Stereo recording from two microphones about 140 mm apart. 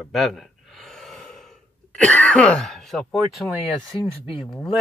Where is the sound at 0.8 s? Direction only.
Centre (ahead or behind).